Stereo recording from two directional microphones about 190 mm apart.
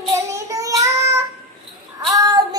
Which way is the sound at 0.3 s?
15° right (ahead or behind).